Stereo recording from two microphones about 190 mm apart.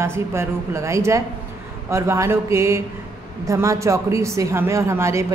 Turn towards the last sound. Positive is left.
turn(degrees=-15)  # may be behind; listen again after turning